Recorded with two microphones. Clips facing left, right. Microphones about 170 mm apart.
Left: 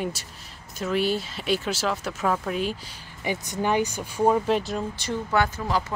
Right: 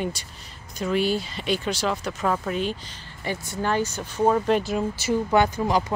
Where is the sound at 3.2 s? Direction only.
15° left (ahead or behind); by 5.1 s 5° right (ahead or behind).